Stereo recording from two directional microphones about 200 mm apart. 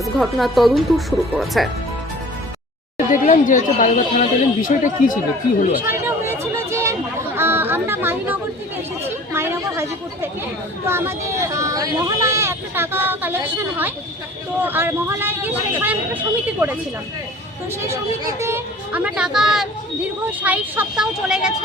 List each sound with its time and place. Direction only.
0.0 s speech: centre (ahead or behind)
3.1 s speech: 40° left (ahead or behind)
5.8 s a sound: 10° right (ahead or behind)
9.3 s chatter: 10° right (ahead or behind)
10.8 s speech: 10° right (ahead or behind)
17.8 s speech: 15° right (ahead or behind)